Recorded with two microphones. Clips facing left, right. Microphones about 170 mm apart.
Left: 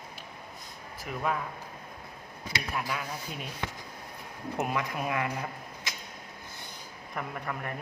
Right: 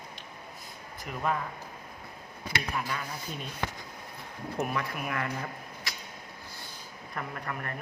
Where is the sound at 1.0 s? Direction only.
Centre (ahead or behind).